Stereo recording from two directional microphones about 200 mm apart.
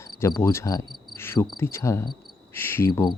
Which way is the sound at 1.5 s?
10° left (ahead or behind).